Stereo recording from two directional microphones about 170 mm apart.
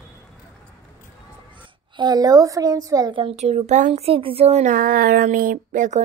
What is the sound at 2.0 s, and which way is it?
A woman's voice, 25° right (ahead or behind).